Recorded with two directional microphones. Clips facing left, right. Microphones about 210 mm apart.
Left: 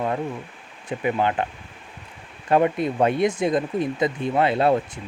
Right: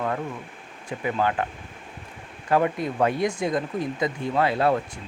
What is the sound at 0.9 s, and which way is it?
Speech, 20° left (ahead or behind).